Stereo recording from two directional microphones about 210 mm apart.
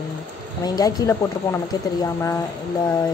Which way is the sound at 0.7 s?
20° left (ahead or behind).